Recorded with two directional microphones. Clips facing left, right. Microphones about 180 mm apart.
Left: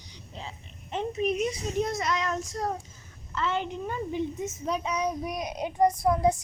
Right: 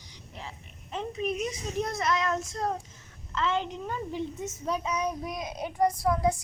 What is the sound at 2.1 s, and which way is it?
Child singing, 15° left (ahead or behind).